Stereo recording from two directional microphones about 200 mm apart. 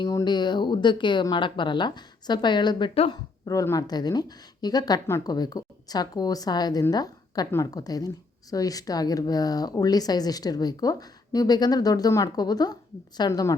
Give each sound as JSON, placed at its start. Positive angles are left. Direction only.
{"t": 0.0, "sound": "speech", "side_deg": 20}
{"t": 3.4, "sound": "speech", "side_deg": 15}